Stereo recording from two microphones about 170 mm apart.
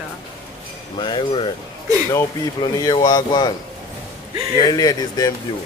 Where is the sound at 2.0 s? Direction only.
20° left (ahead or behind).